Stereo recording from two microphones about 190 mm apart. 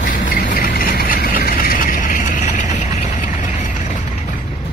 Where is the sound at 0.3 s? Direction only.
50° left (ahead or behind).